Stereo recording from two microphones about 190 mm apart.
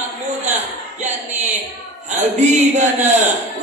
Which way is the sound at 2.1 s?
40° right (ahead or behind).